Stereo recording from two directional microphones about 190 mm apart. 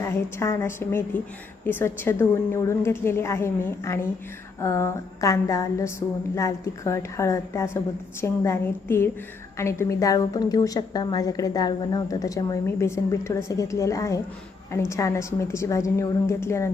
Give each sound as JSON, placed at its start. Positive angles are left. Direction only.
{"t": 0.0, "sound": "a woman's voice", "side_deg": 15}